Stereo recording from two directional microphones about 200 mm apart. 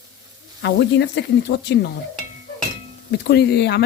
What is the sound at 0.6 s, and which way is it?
Speech, 60° left (ahead or behind).